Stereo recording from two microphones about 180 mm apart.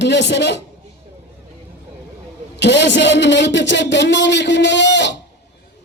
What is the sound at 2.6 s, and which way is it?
A man's voice, 75° left (ahead or behind).